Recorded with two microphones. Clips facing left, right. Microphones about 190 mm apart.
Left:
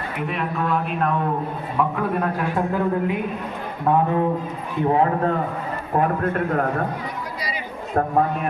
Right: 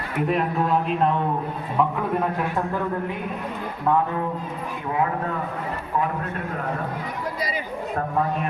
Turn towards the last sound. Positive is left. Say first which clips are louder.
# left 7 dB
turn(degrees=55)  # may be behind; listen again after turning